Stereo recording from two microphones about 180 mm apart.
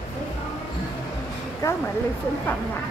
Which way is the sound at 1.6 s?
15° left (ahead or behind).